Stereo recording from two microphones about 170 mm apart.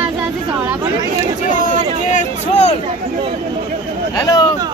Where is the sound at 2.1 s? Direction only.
40° left (ahead or behind).